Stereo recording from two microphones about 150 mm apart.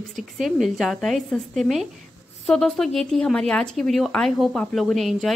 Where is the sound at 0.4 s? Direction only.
Centre (ahead or behind).